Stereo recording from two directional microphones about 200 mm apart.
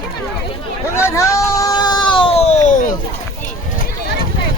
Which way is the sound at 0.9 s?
15° left (ahead or behind).